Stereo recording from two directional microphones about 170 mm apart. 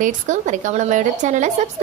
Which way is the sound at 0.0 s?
45° right (ahead or behind).